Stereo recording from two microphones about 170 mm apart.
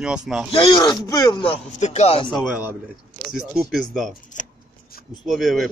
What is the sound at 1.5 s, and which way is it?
Speech, 40° left (ahead or behind).